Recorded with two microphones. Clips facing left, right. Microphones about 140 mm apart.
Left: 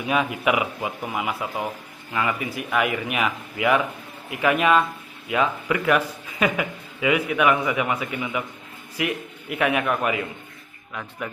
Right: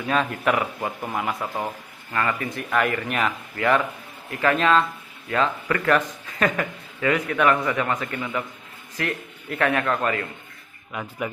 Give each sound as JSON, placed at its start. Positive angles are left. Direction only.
{"t": 0.0, "sound": "a man's voice", "side_deg": 10}
{"t": 10.9, "sound": "speech", "side_deg": -5}